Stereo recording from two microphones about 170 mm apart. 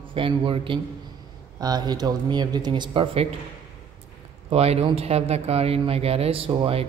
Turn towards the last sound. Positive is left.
turn(degrees=-30)  # may be behind; listen again after turning